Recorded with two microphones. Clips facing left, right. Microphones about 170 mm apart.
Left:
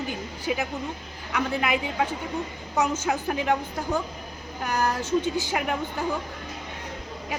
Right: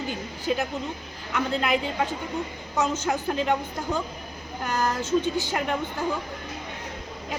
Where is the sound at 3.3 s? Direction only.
10° left (ahead or behind).